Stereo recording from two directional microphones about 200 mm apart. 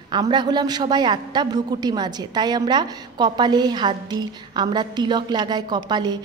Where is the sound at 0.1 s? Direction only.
20° right (ahead or behind).